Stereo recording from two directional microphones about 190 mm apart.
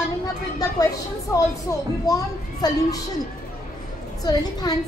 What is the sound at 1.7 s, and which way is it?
A woman's voice, 15° left (ahead or behind).